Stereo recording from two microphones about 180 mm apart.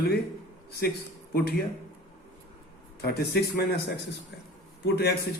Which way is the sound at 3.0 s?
60° left (ahead or behind).